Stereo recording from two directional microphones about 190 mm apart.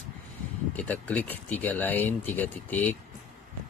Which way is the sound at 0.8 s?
10° left (ahead or behind).